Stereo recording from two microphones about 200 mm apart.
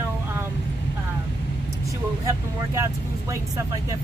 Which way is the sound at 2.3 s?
15° right (ahead or behind).